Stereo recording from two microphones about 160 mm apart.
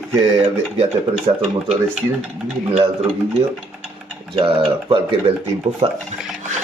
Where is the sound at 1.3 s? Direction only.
35° right (ahead or behind).